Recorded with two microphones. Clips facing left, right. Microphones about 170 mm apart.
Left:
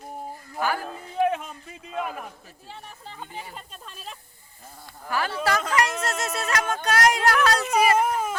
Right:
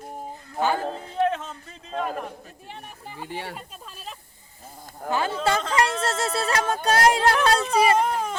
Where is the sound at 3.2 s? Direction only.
80° right.